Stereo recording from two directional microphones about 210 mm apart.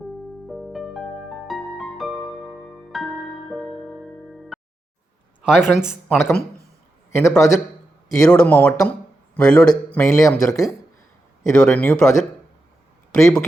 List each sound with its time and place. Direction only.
0.4 s music: centre (ahead or behind)
5.4 s a man's voice: 5° right (ahead or behind)